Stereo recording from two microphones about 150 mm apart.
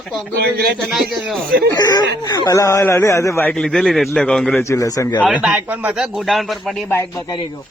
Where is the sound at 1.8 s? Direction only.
25° left (ahead or behind).